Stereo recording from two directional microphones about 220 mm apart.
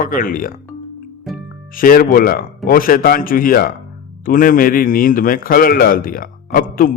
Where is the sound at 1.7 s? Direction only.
40° left (ahead or behind).